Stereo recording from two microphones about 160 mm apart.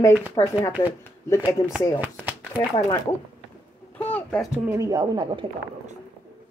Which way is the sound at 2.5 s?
25° left (ahead or behind).